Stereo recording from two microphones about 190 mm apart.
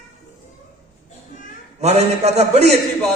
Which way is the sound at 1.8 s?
35° right (ahead or behind).